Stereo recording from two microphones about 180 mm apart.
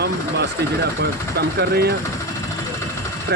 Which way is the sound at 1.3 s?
65° right (ahead or behind).